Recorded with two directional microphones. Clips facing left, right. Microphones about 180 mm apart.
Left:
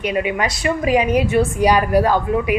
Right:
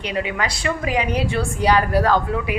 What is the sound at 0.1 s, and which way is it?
A woman's voice, 20° left (ahead or behind).